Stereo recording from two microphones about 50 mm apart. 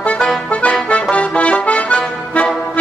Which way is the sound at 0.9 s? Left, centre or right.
Left.